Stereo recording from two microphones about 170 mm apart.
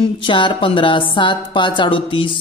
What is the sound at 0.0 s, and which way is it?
A woman's voice, 30° left (ahead or behind).